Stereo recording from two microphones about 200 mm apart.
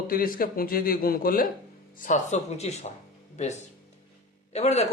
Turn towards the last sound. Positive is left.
turn(degrees=35)  # may be behind; listen again after turning